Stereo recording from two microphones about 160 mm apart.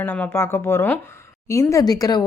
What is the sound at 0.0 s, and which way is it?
Speech, 15° left (ahead or behind).